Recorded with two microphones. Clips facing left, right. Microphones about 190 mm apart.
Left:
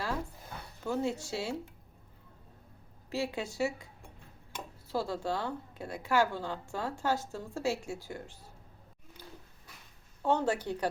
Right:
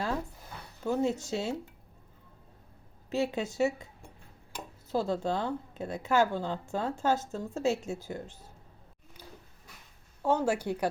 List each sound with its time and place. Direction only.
0.9 s a woman's voice: 20° right (ahead or behind)
3.1 s a woman's voice: 20° right (ahead or behind)
4.9 s a woman's voice: 20° right (ahead or behind)
10.2 s speech: 10° right (ahead or behind)